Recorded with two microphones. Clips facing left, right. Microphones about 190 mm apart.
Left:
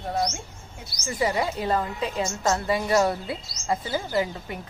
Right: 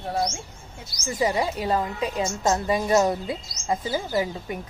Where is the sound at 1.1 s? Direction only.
20° right (ahead or behind).